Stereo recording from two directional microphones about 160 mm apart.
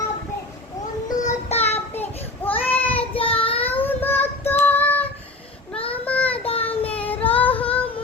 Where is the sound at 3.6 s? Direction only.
10° left (ahead or behind).